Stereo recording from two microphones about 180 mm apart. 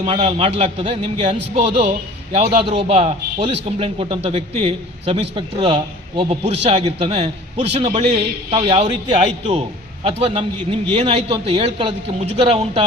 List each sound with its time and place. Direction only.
0.0 s a man's voice: 35° right (ahead or behind)